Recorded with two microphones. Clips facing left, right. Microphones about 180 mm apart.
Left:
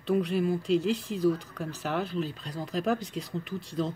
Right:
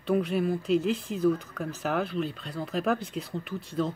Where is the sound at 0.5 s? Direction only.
Centre (ahead or behind).